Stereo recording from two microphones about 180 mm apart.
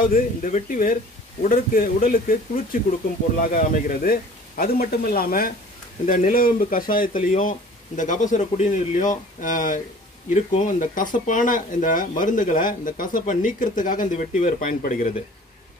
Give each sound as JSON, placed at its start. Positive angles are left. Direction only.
{"t": 0.0, "sound": "speech", "side_deg": 50}